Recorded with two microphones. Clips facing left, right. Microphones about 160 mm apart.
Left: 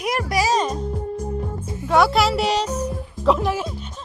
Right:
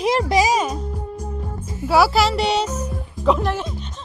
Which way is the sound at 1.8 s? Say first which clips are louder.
Right 1 dB; 5° right (ahead or behind).